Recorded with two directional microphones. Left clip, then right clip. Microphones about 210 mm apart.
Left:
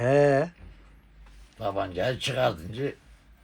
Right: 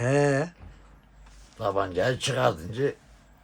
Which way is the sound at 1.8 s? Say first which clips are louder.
Right 2 dB; 15° right (ahead or behind).